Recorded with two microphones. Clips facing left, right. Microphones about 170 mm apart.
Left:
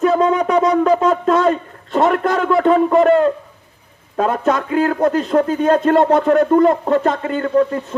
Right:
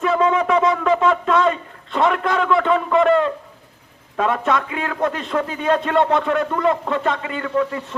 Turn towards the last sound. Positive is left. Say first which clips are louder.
# left 6 dB
turn(degrees=40)  # may be behind; listen again after turning